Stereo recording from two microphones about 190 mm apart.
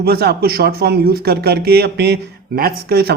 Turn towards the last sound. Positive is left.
turn(degrees=-55)  # may be behind; listen again after turning